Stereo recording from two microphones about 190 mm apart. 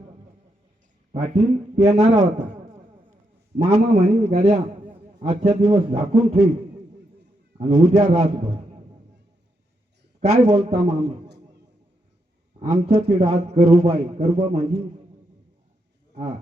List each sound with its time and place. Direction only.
1.1 s a man's voice: 35° right (ahead or behind)
3.7 s a man's voice: 40° right (ahead or behind)
5.5 s a man's voice: 30° right (ahead or behind)
7.6 s a man's voice: 30° right (ahead or behind)
10.2 s a man's voice: 35° right (ahead or behind)
12.5 s a man's voice: 35° right (ahead or behind)